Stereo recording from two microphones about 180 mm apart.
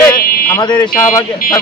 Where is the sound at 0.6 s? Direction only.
25° left (ahead or behind).